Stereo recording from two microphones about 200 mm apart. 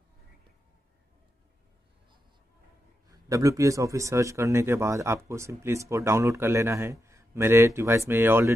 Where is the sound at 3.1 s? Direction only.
15° right (ahead or behind).